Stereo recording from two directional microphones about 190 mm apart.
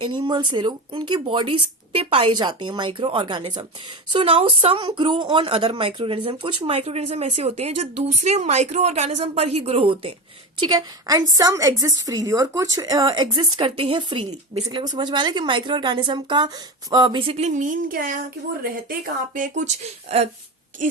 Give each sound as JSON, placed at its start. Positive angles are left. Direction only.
{"t": 0.0, "sound": "a woman's voice", "side_deg": -25}